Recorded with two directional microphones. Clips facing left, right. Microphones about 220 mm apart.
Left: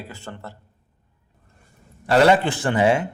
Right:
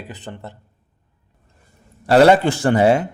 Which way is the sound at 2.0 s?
40° right (ahead or behind).